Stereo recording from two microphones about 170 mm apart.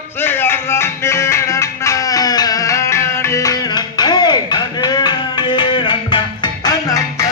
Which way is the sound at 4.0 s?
25° left (ahead or behind).